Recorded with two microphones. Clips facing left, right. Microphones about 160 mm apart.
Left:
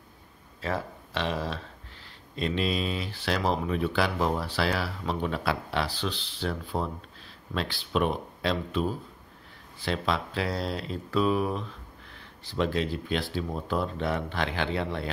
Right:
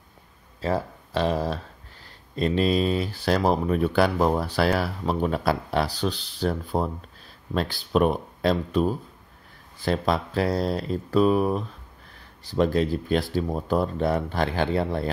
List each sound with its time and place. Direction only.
0.6 s speech: 35° right (ahead or behind)
9.8 s speech: 45° right (ahead or behind)